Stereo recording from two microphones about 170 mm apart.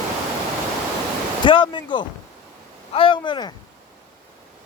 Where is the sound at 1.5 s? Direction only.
30° left (ahead or behind).